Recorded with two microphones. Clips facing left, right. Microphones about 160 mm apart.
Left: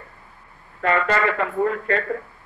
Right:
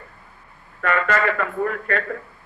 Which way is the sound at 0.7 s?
30° left (ahead or behind).